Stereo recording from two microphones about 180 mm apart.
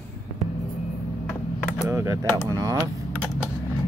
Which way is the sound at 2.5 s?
20° right (ahead or behind).